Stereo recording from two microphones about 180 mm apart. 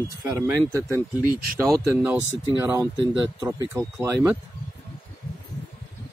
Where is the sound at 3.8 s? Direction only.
15° right (ahead or behind).